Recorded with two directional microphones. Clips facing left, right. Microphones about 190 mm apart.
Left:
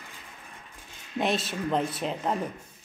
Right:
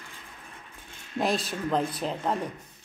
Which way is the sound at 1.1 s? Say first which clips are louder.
Even; centre (ahead or behind).